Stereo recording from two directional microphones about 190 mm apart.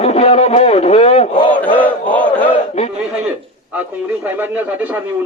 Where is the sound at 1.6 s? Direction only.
10° left (ahead or behind).